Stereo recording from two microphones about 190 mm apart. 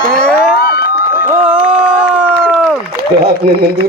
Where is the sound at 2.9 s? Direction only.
55° right (ahead or behind).